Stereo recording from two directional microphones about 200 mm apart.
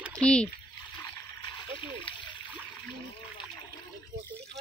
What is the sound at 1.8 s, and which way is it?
Splash, 25° left (ahead or behind).